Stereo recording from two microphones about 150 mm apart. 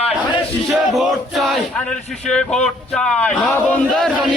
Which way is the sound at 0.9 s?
Centre (ahead or behind).